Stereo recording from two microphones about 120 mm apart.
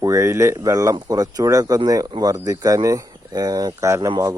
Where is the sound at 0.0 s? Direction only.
25° right (ahead or behind).